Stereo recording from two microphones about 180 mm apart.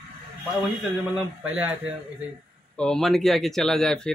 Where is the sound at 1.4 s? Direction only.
10° right (ahead or behind).